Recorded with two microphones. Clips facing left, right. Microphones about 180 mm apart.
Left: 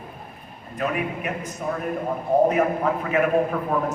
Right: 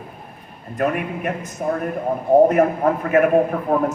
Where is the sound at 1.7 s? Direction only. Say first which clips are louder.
Right 5 dB; 55° right (ahead or behind).